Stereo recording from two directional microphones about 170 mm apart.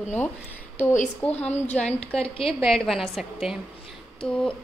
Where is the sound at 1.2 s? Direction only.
10° left (ahead or behind).